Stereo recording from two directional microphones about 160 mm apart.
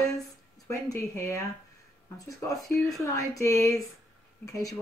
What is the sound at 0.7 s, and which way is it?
Speech, 20° left (ahead or behind).